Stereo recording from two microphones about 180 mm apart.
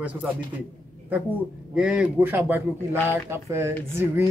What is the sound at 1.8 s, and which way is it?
A man's voice, 5° right (ahead or behind).